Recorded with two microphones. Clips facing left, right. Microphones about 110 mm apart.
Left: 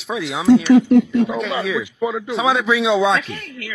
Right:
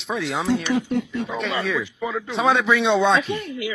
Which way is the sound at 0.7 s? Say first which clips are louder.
Left 11 dB; 90° left.